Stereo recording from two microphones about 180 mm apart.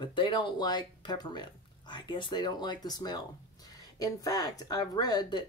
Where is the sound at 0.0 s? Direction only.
25° left (ahead or behind).